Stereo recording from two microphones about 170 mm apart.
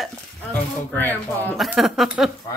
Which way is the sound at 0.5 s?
10° left (ahead or behind).